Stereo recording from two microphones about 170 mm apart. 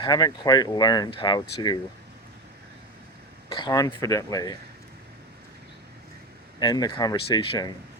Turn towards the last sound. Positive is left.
turn(degrees=25)  # may be behind; listen again after turning